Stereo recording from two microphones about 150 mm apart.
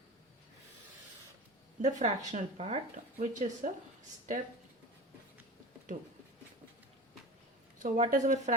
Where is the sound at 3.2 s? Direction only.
55° right (ahead or behind).